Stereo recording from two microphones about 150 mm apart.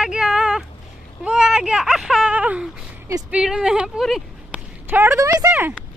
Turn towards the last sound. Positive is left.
turn(degrees=-15)  # may be behind; listen again after turning